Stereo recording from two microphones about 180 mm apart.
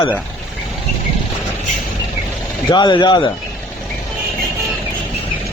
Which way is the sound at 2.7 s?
25° left (ahead or behind).